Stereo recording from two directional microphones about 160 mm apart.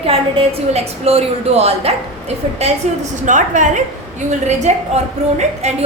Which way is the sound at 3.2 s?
50° right (ahead or behind).